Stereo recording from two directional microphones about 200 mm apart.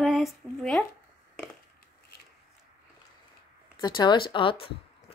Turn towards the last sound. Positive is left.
turn(degrees=25)  # may be behind; listen again after turning